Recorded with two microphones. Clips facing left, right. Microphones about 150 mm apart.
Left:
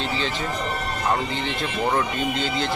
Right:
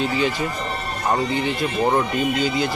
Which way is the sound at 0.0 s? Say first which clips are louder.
Right 5 dB; 10° right (ahead or behind).